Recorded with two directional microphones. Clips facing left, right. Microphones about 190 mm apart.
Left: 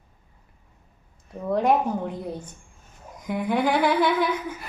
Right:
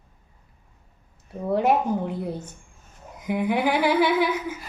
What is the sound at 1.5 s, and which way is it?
Humming, 5° right (ahead or behind).